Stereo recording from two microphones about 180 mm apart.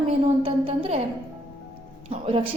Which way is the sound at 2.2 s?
30° right (ahead or behind).